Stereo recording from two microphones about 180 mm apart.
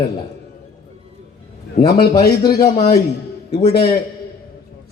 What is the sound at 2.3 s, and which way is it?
Speech, 20° left (ahead or behind).